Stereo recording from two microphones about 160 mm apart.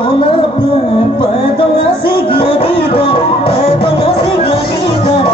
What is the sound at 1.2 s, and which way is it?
Music, 30° left (ahead or behind).